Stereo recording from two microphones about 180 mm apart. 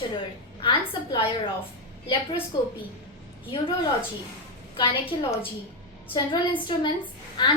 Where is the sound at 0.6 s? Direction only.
30° left (ahead or behind).